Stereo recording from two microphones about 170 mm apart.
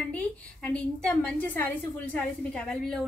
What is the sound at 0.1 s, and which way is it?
A woman's voice, 10° left (ahead or behind).